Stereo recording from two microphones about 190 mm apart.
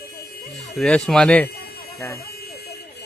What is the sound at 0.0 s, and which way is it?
Alarm, 50° left (ahead or behind).